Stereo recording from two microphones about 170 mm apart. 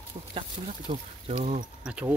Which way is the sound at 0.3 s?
30° right (ahead or behind).